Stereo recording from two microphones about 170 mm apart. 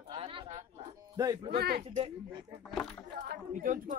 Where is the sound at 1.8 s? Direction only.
40° right (ahead or behind).